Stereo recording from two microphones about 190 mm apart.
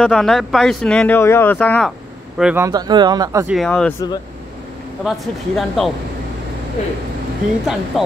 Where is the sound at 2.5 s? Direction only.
20° right (ahead or behind).